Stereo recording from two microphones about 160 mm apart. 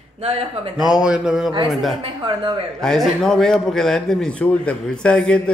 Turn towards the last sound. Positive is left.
turn(degrees=5)  # may be behind; listen again after turning